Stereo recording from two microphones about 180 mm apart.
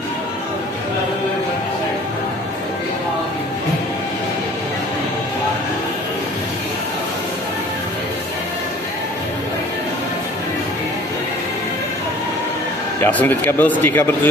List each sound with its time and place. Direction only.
13.0 s speech: 10° left (ahead or behind)